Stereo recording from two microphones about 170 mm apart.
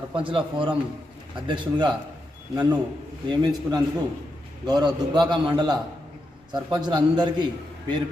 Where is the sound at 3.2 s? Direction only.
25° right (ahead or behind).